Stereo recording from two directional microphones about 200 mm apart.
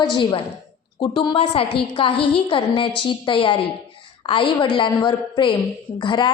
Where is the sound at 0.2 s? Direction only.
25° left (ahead or behind).